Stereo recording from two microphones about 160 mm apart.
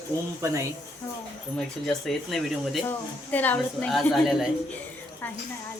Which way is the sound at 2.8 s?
10° left (ahead or behind).